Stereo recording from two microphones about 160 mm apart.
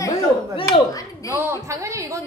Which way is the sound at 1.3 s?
15° right (ahead or behind).